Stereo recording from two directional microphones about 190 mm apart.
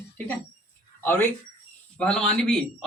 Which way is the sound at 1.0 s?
10° left (ahead or behind).